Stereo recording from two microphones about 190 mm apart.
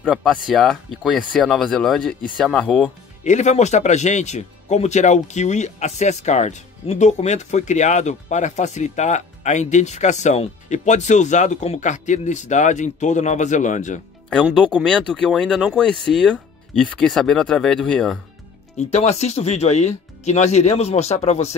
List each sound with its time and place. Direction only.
0.0 s speech: 5° left (ahead or behind)
3.3 s speech: 35° left (ahead or behind)
14.4 s speech: 5° left (ahead or behind)
18.8 s speech: 35° left (ahead or behind)